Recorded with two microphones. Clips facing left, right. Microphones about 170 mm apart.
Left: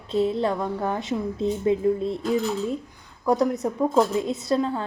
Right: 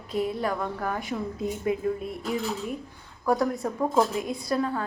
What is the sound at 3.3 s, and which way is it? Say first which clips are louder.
A woman's voice: left 3 dB; 20° left (ahead or behind).